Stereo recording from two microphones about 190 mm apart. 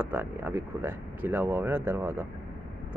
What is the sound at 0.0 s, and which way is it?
Speech, 10° right (ahead or behind).